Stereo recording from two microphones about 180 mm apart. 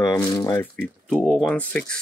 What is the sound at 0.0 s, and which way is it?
Speech, 20° left (ahead or behind).